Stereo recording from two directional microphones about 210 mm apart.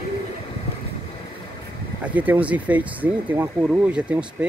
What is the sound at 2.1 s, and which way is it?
Speech, 10° right (ahead or behind).